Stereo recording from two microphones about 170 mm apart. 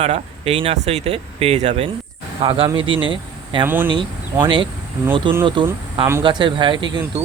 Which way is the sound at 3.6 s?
10° right (ahead or behind).